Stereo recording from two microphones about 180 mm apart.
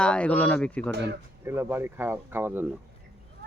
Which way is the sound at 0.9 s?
70° right (ahead or behind).